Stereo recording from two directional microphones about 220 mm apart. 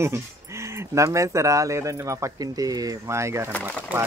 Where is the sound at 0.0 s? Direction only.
10° right (ahead or behind).